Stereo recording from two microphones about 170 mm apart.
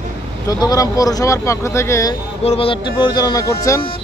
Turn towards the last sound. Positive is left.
turn(degrees=20)  # may be behind; listen again after turning